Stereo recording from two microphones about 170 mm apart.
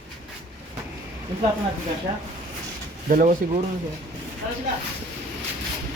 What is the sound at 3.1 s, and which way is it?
Speech, 45° right (ahead or behind).